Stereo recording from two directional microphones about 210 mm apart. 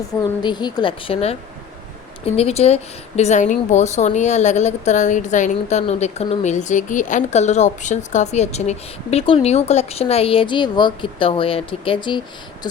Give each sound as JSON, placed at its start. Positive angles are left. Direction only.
{"t": 0.4, "sound": "a woman's voice", "side_deg": 20}